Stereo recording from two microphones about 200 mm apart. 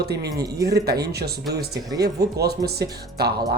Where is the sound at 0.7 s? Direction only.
50° right (ahead or behind).